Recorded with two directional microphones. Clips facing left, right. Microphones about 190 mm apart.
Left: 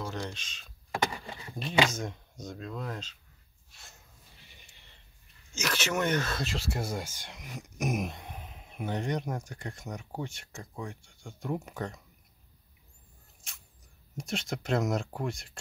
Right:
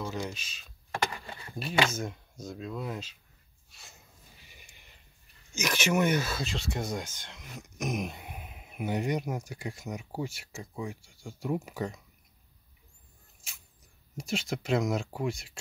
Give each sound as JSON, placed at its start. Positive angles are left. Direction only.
{"t": 0.0, "sound": "speech", "side_deg": -5}
{"t": 0.9, "sound": "vehicle", "side_deg": 20}
{"t": 1.9, "sound": "speech", "side_deg": 0}
{"t": 4.5, "sound": "a sound", "side_deg": -10}
{"t": 5.5, "sound": "speech", "side_deg": -10}
{"t": 14.1, "sound": "speech", "side_deg": 0}